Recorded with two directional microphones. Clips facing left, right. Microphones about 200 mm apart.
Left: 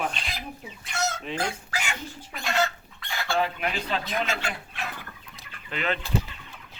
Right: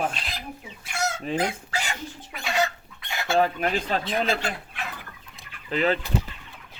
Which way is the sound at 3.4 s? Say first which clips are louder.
Right 5 dB; 45° right (ahead or behind).